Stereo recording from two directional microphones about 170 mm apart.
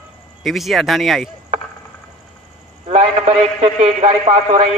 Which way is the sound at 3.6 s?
35° right (ahead or behind).